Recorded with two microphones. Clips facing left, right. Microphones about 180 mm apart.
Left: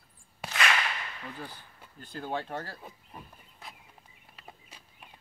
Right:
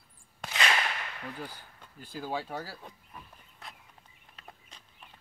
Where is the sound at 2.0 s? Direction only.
5° right (ahead or behind).